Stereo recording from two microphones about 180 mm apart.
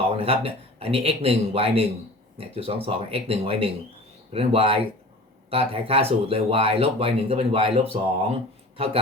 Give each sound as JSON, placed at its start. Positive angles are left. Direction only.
{"t": 0.2, "sound": "speech", "side_deg": -35}